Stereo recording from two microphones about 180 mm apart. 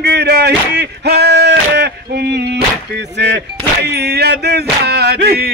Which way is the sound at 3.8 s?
65° right (ahead or behind).